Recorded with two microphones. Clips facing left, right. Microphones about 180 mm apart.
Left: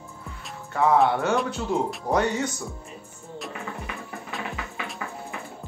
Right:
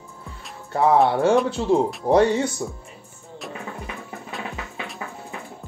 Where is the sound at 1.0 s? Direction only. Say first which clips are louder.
Right 5 dB; 35° right (ahead or behind).